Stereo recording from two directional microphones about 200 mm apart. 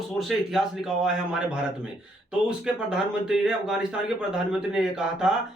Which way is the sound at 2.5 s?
5° right (ahead or behind).